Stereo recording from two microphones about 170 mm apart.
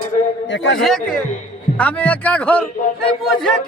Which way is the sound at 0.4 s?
90° left.